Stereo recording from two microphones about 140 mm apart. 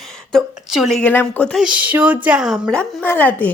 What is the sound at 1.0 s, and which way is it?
Speech, 10° left (ahead or behind).